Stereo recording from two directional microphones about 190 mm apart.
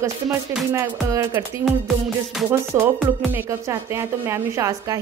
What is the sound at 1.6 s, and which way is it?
Music, centre (ahead or behind).